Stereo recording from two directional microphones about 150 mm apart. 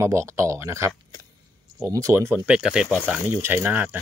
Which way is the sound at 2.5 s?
5° right (ahead or behind).